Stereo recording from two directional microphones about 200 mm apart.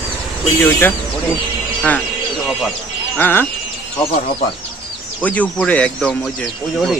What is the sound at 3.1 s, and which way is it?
Speech, 10° left (ahead or behind).